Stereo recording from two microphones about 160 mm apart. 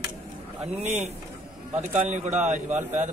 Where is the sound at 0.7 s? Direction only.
40° right (ahead or behind).